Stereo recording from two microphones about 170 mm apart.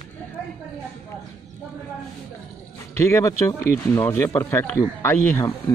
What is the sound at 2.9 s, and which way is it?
Speech, 15° left (ahead or behind).